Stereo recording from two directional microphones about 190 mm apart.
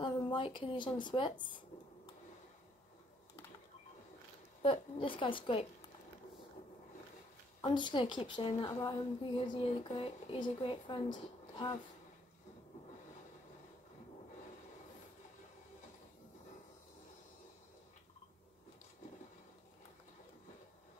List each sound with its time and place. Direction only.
0.0 s speech: 25° left (ahead or behind)
4.6 s a woman's voice: 25° left (ahead or behind)
7.6 s a woman's voice: 25° left (ahead or behind)